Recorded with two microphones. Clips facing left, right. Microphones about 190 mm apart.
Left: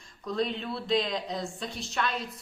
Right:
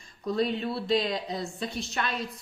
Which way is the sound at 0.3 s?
5° right (ahead or behind).